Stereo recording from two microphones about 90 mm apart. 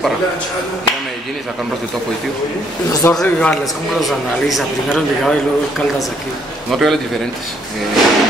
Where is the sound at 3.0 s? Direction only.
25° left (ahead or behind).